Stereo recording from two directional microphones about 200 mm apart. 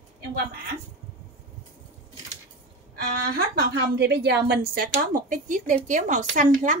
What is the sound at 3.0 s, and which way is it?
Speech, 50° right (ahead or behind).